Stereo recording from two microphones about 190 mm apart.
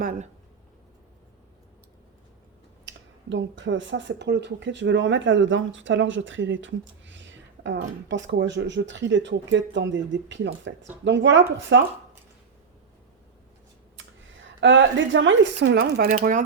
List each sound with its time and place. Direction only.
0.0 s speech: 45° right (ahead or behind)
2.8 s speech: 75° right (ahead or behind)
14.6 s speech: 75° right (ahead or behind); by 16.0 s 60° right (ahead or behind)
16.0 s speech: 40° right (ahead or behind)